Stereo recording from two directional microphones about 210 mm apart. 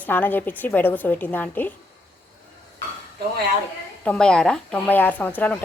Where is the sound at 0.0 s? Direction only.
10° left (ahead or behind).